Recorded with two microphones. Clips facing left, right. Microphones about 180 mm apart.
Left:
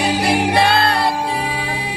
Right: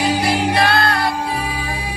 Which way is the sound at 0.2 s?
55° left (ahead or behind).